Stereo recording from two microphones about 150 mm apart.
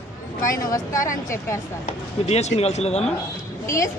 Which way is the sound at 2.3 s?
45° left (ahead or behind).